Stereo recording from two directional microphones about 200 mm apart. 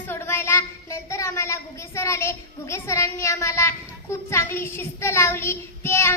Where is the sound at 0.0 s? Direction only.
10° left (ahead or behind).